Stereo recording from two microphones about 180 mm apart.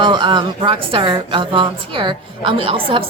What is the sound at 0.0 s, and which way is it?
A woman's voice, 25° right (ahead or behind).